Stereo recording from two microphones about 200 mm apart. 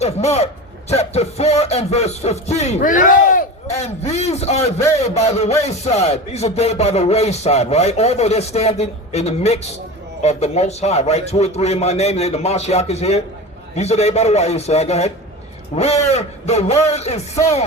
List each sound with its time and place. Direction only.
0.0 s speech: 30° left (ahead or behind)